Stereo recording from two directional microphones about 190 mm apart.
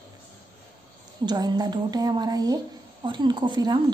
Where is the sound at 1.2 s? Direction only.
20° right (ahead or behind).